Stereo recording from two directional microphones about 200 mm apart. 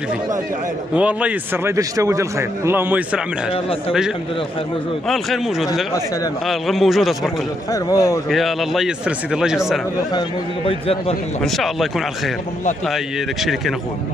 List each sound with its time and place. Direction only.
0.9 s a man's voice: 5° right (ahead or behind)
5.0 s speech: centre (ahead or behind)
7.7 s a man's voice: 15° left (ahead or behind)
8.3 s speech: centre (ahead or behind)
10.1 s a man's voice: 25° left (ahead or behind)
11.4 s speech: centre (ahead or behind)